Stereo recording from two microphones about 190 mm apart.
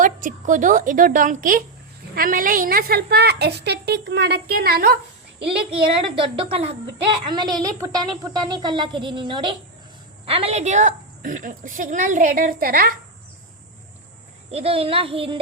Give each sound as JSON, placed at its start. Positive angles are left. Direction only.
{"t": 0.0, "sound": "a woman's voice", "side_deg": -45}
{"t": 6.0, "sound": "a woman's voice", "side_deg": -25}
{"t": 14.5, "sound": "speech", "side_deg": -30}